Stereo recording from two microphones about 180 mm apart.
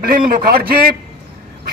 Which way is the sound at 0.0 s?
55° right (ahead or behind).